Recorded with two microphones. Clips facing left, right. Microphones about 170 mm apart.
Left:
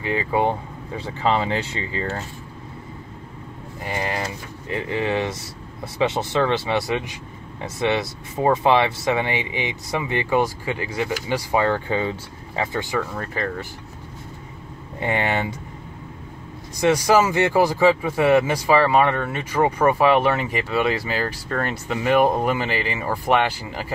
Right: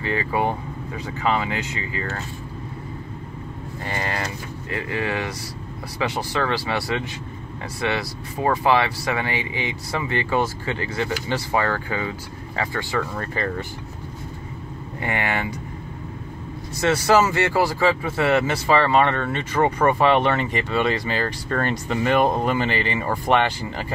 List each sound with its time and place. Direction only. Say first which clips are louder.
0.0 s speech: left 2 dB; 20° left (ahead or behind)
3.8 s speech: left 2 dB; 15° left (ahead or behind)
13.1 s speech: even; centre (ahead or behind)
15.0 s speech: left 3 dB; 25° left (ahead or behind)
16.7 s speech: left 1 dB; 15° left (ahead or behind)